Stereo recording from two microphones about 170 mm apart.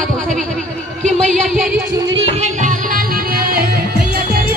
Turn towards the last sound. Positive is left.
turn(degrees=-60)  # may be behind; listen again after turning